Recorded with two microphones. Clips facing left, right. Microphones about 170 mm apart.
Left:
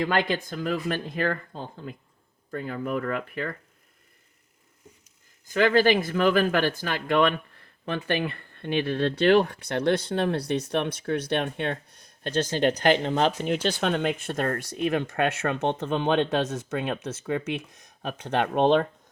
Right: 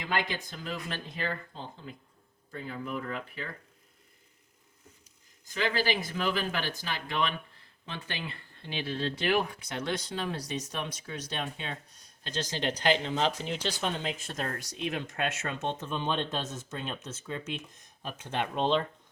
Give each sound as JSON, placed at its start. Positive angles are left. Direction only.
{"t": 0.0, "sound": "speech", "side_deg": 55}
{"t": 5.5, "sound": "speech", "side_deg": 55}